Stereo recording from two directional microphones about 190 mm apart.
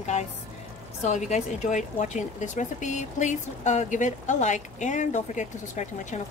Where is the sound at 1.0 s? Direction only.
40° left (ahead or behind).